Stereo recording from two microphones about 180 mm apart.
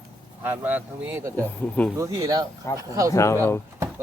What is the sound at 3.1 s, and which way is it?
Speech, 15° left (ahead or behind).